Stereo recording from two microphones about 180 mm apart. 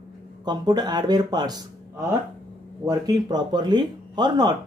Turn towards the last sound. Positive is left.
turn(degrees=-25)  # may be behind; listen again after turning